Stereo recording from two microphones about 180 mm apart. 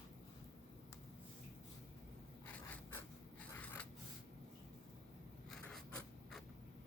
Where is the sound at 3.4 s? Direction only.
10° left (ahead or behind).